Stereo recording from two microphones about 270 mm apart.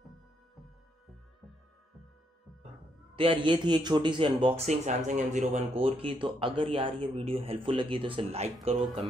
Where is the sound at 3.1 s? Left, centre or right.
Centre.